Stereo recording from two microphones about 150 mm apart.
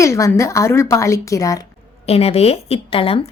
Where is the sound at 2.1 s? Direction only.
40° left (ahead or behind).